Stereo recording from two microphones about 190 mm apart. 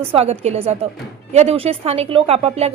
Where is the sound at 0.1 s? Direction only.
35° right (ahead or behind).